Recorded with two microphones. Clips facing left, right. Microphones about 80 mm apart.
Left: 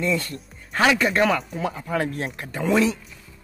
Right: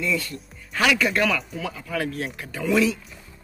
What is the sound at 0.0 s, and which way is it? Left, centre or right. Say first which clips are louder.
Speech: left 2 dB; left.